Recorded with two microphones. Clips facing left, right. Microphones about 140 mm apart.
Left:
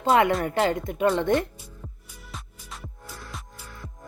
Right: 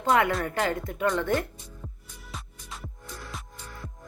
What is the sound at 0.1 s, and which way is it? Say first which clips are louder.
Speech: left 3 dB; 25° left (ahead or behind).